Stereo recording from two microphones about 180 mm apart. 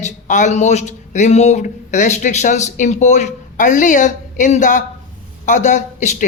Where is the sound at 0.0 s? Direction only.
40° left (ahead or behind).